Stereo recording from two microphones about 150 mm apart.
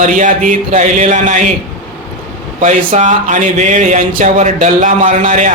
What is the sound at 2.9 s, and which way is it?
Speech, 55° right (ahead or behind).